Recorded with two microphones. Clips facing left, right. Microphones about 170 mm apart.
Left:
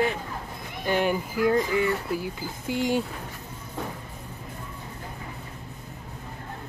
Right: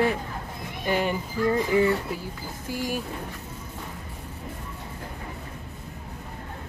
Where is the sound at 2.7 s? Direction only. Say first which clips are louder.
Left 4 dB; 25° left (ahead or behind).